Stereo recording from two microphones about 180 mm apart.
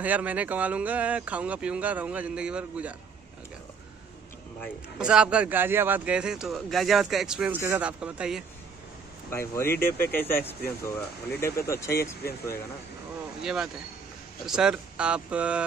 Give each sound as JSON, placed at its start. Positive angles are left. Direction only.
{"t": 0.0, "sound": "speech", "side_deg": -10}
{"t": 4.9, "sound": "speech", "side_deg": -5}
{"t": 9.3, "sound": "speech", "side_deg": 15}
{"t": 13.4, "sound": "speech", "side_deg": -5}